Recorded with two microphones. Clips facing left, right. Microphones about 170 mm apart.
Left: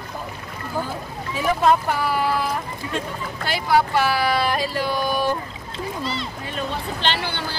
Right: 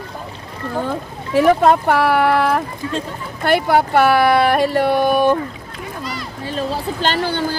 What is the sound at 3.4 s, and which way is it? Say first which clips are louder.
Speech: right 5 dB; 55° right (ahead or behind).